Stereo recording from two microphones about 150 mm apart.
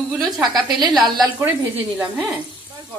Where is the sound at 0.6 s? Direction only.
30° right (ahead or behind).